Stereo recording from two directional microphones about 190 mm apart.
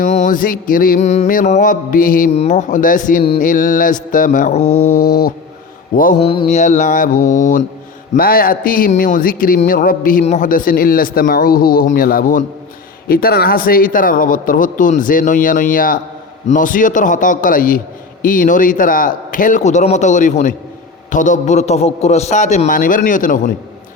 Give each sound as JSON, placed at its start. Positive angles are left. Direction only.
{"t": 0.0, "sound": "speech", "side_deg": 40}
{"t": 4.6, "sound": "mantra", "side_deg": 90}
{"t": 4.9, "sound": "speech", "side_deg": 50}
{"t": 6.2, "sound": "mantra", "side_deg": 25}
{"t": 6.5, "sound": "a man's voice", "side_deg": 40}